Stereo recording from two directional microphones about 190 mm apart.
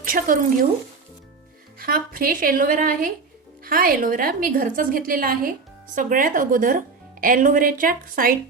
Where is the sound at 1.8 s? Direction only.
50° right (ahead or behind).